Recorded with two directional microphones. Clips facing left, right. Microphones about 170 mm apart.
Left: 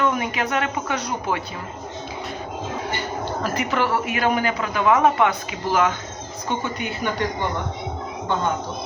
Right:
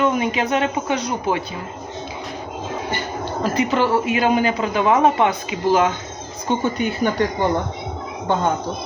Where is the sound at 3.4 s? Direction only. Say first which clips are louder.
Right 5 dB; 25° right (ahead or behind).